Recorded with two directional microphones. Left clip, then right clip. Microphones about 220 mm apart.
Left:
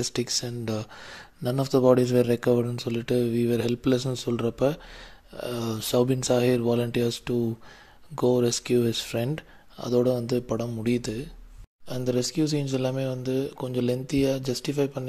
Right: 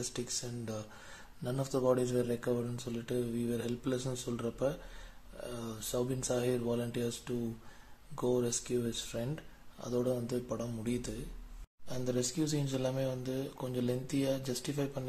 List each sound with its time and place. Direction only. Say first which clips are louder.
0.0 s speech: left 11 dB; 35° left (ahead or behind)